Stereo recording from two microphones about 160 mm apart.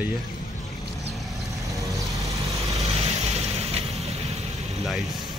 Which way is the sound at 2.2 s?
20° right (ahead or behind).